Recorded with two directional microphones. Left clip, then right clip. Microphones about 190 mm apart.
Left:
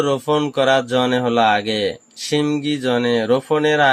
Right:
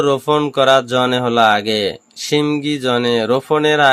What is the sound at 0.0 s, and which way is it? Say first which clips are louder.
Speech: right 3 dB; 20° right (ahead or behind).